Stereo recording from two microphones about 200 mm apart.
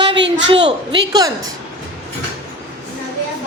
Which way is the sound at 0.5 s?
25° right (ahead or behind).